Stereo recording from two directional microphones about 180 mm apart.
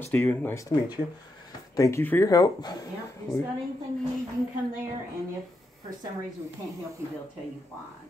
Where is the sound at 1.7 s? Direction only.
15° left (ahead or behind).